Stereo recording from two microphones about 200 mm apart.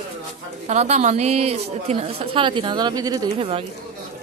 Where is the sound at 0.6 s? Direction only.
35° right (ahead or behind); by 3.2 s 20° right (ahead or behind).